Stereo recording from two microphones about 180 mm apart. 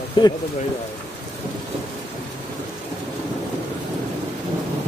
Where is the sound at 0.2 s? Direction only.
25° left (ahead or behind).